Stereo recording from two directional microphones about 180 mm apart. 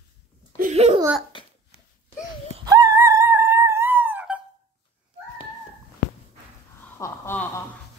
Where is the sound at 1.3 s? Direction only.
25° left (ahead or behind).